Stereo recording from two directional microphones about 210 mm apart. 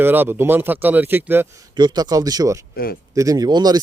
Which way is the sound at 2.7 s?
45° left (ahead or behind).